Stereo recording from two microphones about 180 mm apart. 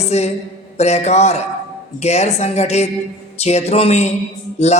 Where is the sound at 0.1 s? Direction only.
40° left (ahead or behind).